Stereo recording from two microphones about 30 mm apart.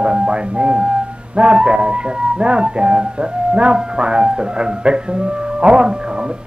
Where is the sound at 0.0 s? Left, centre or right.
Right.